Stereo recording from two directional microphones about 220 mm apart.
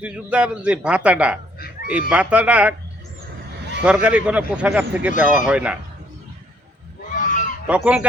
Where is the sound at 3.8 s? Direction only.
5° right (ahead or behind).